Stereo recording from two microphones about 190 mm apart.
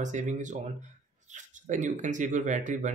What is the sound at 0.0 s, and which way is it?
Speech, 40° right (ahead or behind).